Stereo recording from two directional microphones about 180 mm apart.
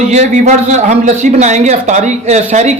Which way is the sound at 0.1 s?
40° right (ahead or behind).